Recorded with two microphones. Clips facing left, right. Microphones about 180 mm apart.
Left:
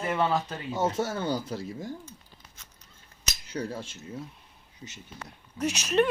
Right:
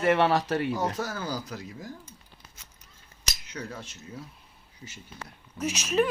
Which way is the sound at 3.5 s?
30° left (ahead or behind).